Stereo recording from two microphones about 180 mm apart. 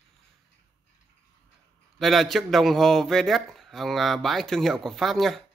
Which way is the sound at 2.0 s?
Centre (ahead or behind).